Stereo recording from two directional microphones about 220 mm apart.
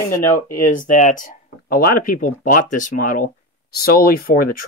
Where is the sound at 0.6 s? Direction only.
35° left (ahead or behind).